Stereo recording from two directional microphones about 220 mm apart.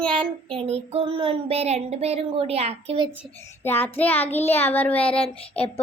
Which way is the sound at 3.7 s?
10° left (ahead or behind).